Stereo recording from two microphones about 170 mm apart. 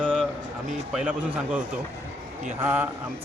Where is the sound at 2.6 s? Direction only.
10° right (ahead or behind).